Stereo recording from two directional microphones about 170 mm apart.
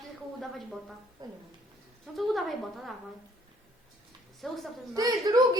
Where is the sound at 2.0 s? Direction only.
Centre (ahead or behind).